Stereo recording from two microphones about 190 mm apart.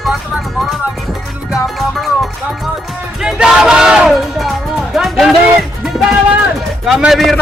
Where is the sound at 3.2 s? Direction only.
5° right (ahead or behind).